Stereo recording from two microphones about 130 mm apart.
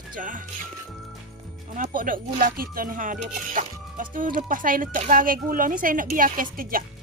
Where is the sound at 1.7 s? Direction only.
85° right.